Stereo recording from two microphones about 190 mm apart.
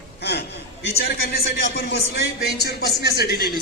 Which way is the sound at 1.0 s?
55° left (ahead or behind).